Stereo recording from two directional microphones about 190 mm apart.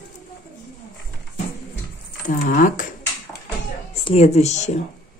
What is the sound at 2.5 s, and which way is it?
Dishes, 45° left (ahead or behind).